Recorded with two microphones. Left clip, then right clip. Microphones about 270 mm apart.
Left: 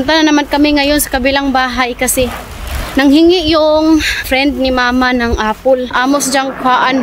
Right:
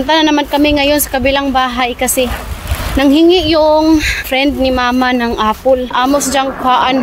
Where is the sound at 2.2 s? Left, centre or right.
Centre.